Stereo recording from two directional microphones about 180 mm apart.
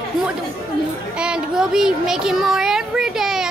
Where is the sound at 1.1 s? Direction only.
5° right (ahead or behind).